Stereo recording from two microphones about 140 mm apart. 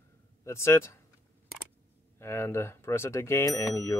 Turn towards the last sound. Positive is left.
turn(degrees=25)  # may be behind; listen again after turning